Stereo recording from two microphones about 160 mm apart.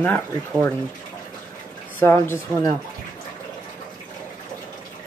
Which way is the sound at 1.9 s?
15° left (ahead or behind).